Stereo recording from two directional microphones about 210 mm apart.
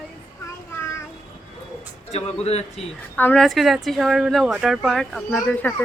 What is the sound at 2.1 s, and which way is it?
Speech, 30° left (ahead or behind).